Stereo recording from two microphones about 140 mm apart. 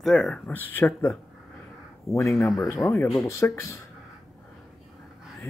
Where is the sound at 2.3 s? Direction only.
Centre (ahead or behind).